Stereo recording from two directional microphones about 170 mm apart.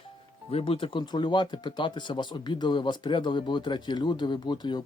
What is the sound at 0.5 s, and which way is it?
Speech, 35° left (ahead or behind).